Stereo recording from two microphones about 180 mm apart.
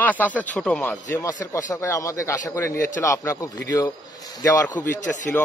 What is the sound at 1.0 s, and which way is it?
A man's voice, 20° left (ahead or behind).